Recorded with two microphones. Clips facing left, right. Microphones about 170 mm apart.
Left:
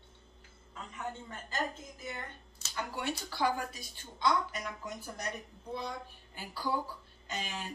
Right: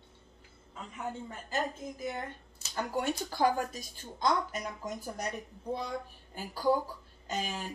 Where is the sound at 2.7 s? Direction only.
45° right (ahead or behind).